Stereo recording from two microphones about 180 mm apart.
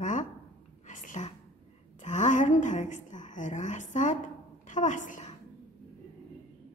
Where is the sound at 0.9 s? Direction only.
45° left (ahead or behind).